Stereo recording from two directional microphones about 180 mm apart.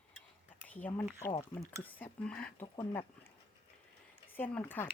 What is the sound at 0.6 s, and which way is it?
Speech, 10° left (ahead or behind).